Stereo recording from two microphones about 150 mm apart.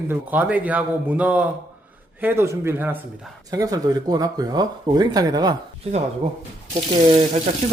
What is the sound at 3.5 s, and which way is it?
Speech, 25° right (ahead or behind).